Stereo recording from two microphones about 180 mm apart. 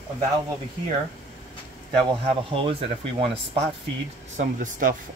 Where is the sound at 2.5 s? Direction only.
30° right (ahead or behind).